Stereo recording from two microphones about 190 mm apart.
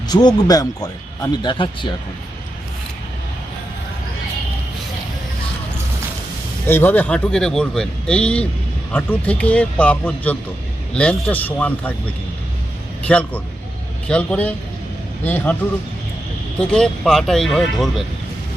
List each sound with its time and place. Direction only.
0.1 s speech: 20° left (ahead or behind)
6.7 s speech: 10° left (ahead or behind)
13.1 s speech: 5° left (ahead or behind)
16.6 s speech: 5° left (ahead or behind)